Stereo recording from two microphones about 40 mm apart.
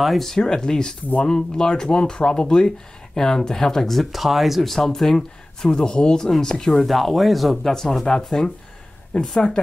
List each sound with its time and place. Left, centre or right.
0.0 s speech: centre
0.3 s speech: centre
4.6 s speech: centre
5.9 s speech: left; by 7.7 s centre
7.7 s speech: centre